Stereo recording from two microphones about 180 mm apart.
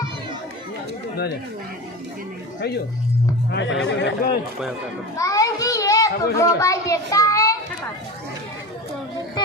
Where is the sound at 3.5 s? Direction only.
90° left.